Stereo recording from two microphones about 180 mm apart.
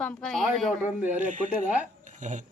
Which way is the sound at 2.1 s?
45° right (ahead or behind).